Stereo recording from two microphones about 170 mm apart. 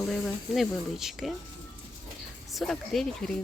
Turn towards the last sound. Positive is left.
turn(degrees=0)  # may be behind; listen again after turning